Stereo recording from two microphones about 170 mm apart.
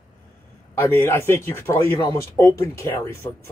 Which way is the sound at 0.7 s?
15° left (ahead or behind).